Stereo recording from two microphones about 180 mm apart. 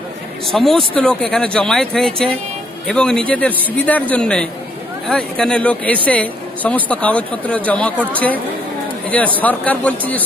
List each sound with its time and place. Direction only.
0.5 s speech: centre (ahead or behind)
9.4 s speech: 10° left (ahead or behind)